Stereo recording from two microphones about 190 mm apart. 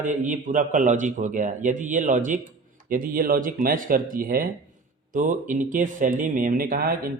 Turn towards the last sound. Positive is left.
turn(degrees=-50)  # may be behind; listen again after turning